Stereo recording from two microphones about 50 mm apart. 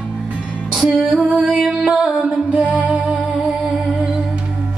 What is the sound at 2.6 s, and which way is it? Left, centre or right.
Music, right.